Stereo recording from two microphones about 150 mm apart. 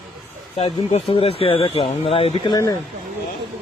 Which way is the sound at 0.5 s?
45° left (ahead or behind).